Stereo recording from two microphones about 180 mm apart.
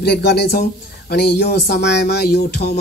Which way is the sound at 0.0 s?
65° left (ahead or behind).